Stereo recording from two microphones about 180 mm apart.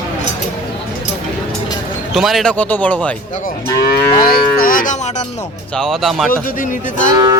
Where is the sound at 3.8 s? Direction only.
55° left (ahead or behind).